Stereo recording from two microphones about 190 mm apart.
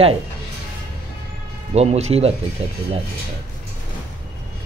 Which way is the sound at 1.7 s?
35° right (ahead or behind).